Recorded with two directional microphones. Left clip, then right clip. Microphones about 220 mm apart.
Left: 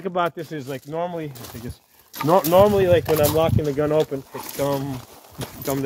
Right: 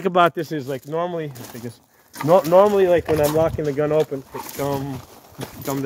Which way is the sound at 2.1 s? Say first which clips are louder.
Right 2 dB; 10° right (ahead or behind).